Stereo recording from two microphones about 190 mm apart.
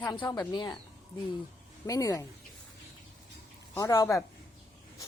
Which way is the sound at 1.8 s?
20° left (ahead or behind).